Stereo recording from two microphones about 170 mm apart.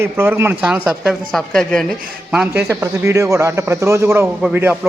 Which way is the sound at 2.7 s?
15° right (ahead or behind).